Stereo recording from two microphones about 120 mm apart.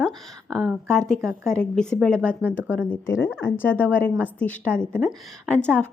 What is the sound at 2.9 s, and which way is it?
A woman's voice, 20° left (ahead or behind).